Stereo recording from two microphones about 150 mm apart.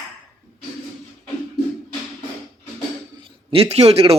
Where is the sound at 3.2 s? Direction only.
35° right (ahead or behind).